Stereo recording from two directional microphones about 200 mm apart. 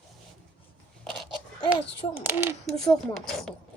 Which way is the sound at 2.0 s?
25° left (ahead or behind).